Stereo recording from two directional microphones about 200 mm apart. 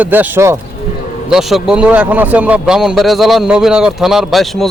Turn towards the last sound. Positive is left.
turn(degrees=0)  # may be behind; listen again after turning